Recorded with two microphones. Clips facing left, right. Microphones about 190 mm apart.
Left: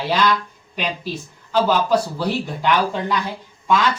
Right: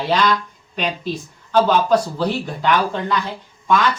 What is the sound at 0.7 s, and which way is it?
Speech, 5° left (ahead or behind).